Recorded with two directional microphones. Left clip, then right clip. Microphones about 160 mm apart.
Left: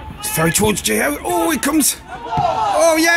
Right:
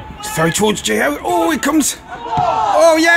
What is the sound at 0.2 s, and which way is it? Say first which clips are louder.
Speech: right 2 dB; centre (ahead or behind).